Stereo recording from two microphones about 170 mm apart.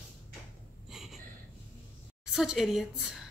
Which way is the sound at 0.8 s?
Centre (ahead or behind).